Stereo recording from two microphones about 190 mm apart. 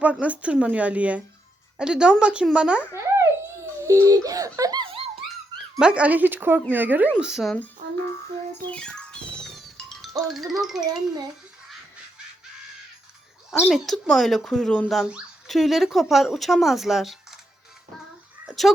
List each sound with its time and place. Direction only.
0.0 s speech: 5° right (ahead or behind); by 5.0 s 25° right (ahead or behind)
5.8 s speech: 5° right (ahead or behind)
8.7 s music: 5° left (ahead or behind)
10.2 s speech: centre (ahead or behind)
13.7 s speech: centre (ahead or behind)
18.4 s a sound: centre (ahead or behind)